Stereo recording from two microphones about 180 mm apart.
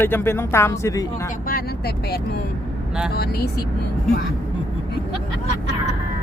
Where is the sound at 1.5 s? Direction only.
60° left (ahead or behind).